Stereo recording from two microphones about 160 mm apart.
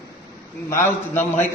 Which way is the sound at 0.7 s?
15° left (ahead or behind).